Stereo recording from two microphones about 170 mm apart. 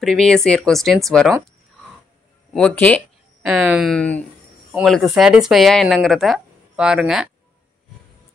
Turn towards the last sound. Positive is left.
turn(degrees=-5)  # may be behind; listen again after turning